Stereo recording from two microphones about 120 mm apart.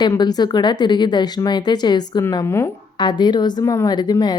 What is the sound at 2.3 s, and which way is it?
Speech, 25° left (ahead or behind).